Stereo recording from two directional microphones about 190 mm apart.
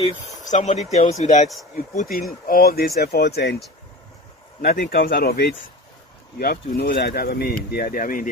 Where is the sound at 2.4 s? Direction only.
50° left (ahead or behind).